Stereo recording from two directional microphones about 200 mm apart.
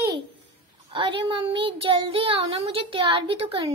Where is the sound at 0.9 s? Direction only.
25° right (ahead or behind).